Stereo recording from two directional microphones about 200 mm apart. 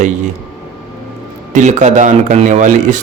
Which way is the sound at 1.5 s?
35° right (ahead or behind).